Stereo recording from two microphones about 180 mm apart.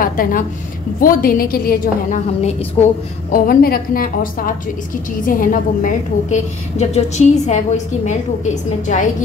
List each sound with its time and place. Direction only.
0.0 s a woman's voice: 50° left (ahead or behind)
2.8 s a woman's voice: 35° left (ahead or behind)
3.3 s a woman's voice: 55° left (ahead or behind)